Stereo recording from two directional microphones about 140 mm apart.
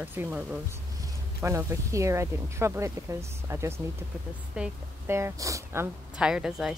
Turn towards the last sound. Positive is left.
turn(degrees=-5)  # may be behind; listen again after turning